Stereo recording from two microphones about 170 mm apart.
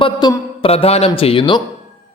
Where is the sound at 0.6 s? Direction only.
35° left (ahead or behind).